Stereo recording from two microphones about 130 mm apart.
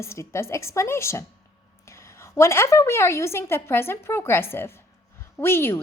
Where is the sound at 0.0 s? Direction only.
20° left (ahead or behind).